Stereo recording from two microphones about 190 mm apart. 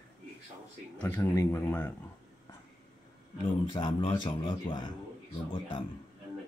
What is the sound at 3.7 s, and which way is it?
A man's voice, 25° left (ahead or behind).